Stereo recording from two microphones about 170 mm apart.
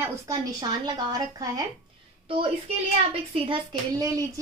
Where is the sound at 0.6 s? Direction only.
25° right (ahead or behind).